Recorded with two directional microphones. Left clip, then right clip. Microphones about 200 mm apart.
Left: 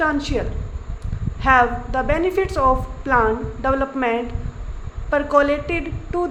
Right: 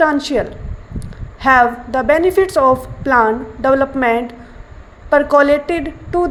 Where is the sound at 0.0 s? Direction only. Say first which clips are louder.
Right 7 dB; 25° right (ahead or behind).